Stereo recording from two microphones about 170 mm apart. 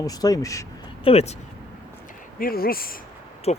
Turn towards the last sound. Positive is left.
turn(degrees=40)  # may be behind; listen again after turning